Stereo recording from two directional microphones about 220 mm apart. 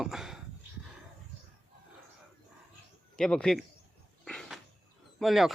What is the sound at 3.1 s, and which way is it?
Speech, 5° left (ahead or behind).